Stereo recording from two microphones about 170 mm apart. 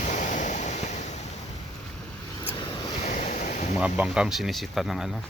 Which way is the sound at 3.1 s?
45° left (ahead or behind).